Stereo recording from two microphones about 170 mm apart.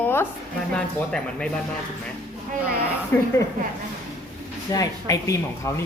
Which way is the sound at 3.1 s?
15° left (ahead or behind).